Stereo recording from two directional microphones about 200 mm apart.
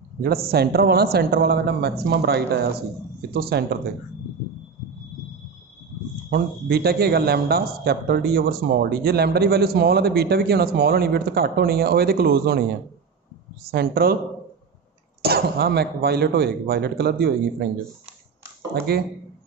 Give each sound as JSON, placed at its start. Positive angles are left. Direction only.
{"t": 0.5, "sound": "a man's voice", "side_deg": -50}
{"t": 6.3, "sound": "a man's voice", "side_deg": -50}
{"t": 13.7, "sound": "a man's voice", "side_deg": -50}
{"t": 15.2, "sound": "a man's voice", "side_deg": -50}
{"t": 18.9, "sound": "a man's voice", "side_deg": -50}